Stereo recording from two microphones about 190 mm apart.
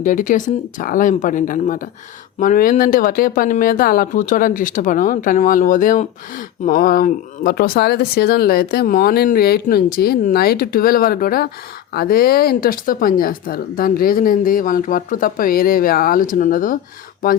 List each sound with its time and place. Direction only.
0.0 s speech: 45° left (ahead or behind)